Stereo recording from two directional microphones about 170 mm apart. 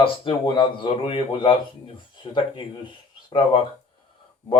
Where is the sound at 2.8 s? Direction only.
25° left (ahead or behind).